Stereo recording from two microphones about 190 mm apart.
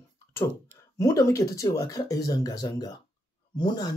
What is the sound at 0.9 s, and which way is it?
Speech, 15° left (ahead or behind).